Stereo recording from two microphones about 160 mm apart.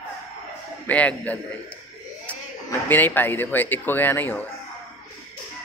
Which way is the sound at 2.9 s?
10° left (ahead or behind).